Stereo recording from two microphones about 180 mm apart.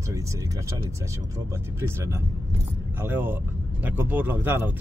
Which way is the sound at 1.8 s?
15° right (ahead or behind).